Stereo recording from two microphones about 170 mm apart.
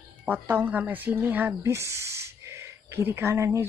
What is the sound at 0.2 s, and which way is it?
Speech, 10° right (ahead or behind).